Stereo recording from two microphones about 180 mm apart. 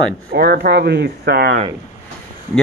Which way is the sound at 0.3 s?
60° right (ahead or behind).